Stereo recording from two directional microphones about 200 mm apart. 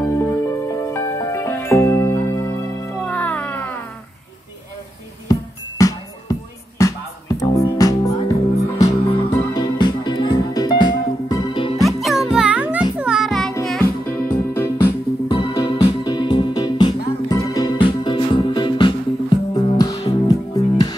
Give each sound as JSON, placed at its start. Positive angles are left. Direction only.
{"t": 0.1, "sound": "music", "side_deg": 15}
{"t": 5.3, "sound": "music", "side_deg": 15}
{"t": 11.8, "sound": "music", "side_deg": 0}
{"t": 15.2, "sound": "music", "side_deg": 25}